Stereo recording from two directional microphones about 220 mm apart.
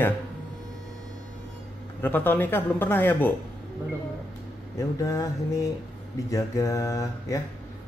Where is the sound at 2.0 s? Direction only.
10° left (ahead or behind).